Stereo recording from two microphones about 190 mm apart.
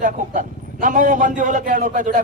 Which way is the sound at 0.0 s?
45° right (ahead or behind).